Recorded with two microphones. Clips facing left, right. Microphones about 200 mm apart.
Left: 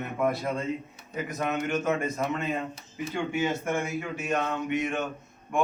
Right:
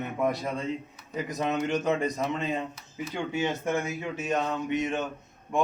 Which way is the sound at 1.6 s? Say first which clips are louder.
Right 1 dB; 20° right (ahead or behind).